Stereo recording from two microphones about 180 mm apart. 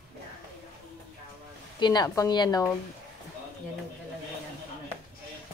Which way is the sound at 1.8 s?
20° left (ahead or behind).